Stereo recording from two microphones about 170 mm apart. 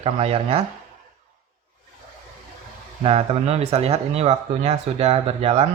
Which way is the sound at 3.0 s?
40° right (ahead or behind).